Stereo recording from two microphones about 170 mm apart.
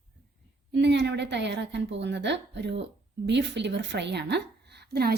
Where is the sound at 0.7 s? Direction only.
90° right.